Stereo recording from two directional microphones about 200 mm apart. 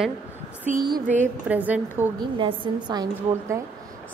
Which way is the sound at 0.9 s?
40° right (ahead or behind).